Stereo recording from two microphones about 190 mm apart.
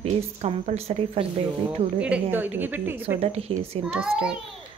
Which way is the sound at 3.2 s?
30° right (ahead or behind).